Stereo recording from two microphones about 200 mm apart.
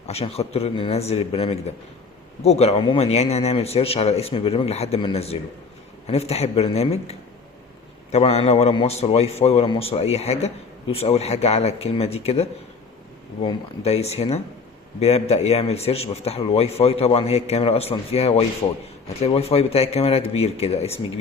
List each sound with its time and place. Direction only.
0.1 s a man's voice: 30° left (ahead or behind)